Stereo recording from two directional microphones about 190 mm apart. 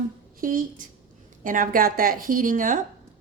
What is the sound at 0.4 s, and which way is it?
A woman's voice, 45° right (ahead or behind).